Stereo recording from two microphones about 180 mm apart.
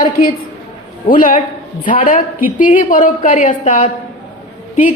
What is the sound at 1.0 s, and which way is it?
Speech, 50° left (ahead or behind).